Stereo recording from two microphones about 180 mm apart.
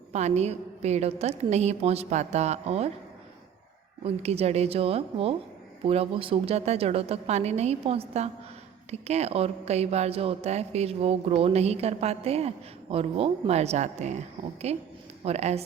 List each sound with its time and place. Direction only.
0.1 s a woman's voice: 40° right (ahead or behind)
4.0 s a woman's voice: 35° right (ahead or behind)